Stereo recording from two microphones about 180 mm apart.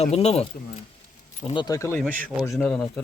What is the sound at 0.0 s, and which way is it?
Speech, 35° left (ahead or behind).